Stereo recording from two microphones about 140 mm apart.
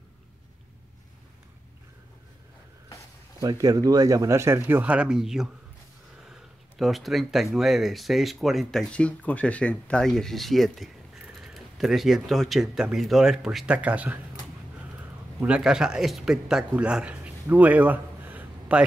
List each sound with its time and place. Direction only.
3.3 s speech: 25° right (ahead or behind)
15.4 s speech: 5° right (ahead or behind)